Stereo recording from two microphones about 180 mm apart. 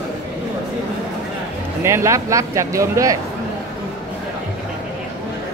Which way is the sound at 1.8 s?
15° right (ahead or behind).